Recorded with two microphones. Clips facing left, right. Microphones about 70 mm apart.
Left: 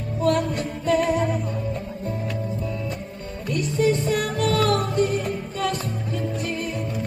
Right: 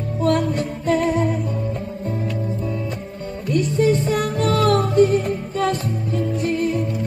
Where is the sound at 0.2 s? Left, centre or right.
Right.